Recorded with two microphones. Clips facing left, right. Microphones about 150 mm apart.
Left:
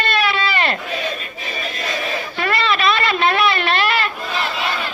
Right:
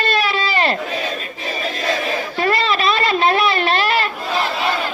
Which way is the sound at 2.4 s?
40° right (ahead or behind).